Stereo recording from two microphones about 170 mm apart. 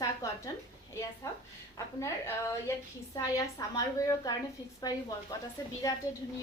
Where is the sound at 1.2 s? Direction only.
20° left (ahead or behind).